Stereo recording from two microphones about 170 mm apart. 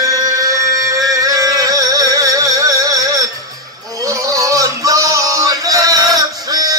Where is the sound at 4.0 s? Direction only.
20° right (ahead or behind).